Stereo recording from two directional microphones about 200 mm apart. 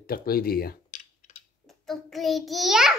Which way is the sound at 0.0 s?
50° left (ahead or behind).